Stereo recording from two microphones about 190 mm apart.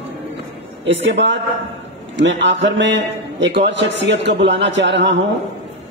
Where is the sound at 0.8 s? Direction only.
70° right (ahead or behind).